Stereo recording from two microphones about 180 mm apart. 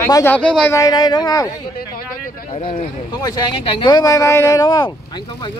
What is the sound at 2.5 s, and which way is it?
Speech, 30° left (ahead or behind).